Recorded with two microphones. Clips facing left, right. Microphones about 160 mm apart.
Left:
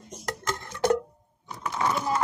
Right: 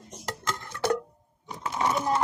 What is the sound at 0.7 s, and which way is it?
Clock, 15° left (ahead or behind).